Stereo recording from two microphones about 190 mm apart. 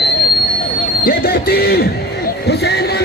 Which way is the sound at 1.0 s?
50° left (ahead or behind).